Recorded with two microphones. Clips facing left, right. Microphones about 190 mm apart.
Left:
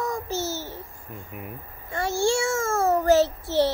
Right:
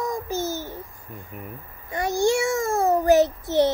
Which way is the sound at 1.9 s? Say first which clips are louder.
Right 2 dB; 15° right (ahead or behind).